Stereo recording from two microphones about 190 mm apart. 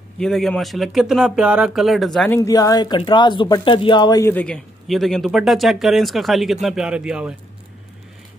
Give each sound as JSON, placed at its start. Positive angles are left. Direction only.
{"t": 0.2, "sound": "speech", "side_deg": 0}
{"t": 2.4, "sound": "speech", "side_deg": 20}